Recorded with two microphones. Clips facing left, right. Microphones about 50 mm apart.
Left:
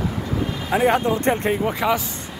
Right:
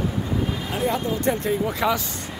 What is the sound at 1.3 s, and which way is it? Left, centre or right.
Speech, left.